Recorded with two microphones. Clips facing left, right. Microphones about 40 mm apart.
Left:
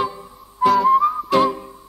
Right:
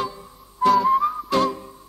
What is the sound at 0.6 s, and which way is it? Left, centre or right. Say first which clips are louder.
Whistling: left 3 dB; centre.